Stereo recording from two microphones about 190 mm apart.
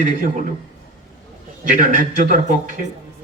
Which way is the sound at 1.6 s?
45° right (ahead or behind).